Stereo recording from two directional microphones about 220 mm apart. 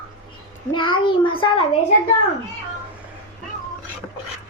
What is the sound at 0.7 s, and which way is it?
Speech, 20° left (ahead or behind).